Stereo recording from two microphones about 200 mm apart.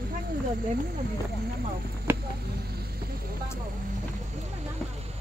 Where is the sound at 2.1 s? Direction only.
10° right (ahead or behind).